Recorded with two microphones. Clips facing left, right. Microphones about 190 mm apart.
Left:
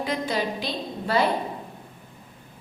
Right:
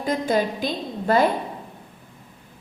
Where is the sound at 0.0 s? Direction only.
45° right (ahead or behind).